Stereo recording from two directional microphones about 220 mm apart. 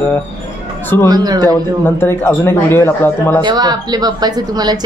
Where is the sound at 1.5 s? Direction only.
10° left (ahead or behind).